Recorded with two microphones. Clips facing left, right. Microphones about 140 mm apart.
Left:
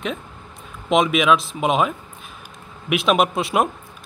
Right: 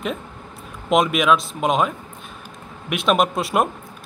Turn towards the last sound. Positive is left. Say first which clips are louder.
# even
turn(degrees=0)  # may be behind; listen again after turning